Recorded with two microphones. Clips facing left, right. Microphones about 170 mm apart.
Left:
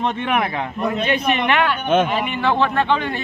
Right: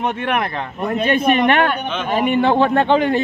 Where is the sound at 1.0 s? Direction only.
50° right (ahead or behind).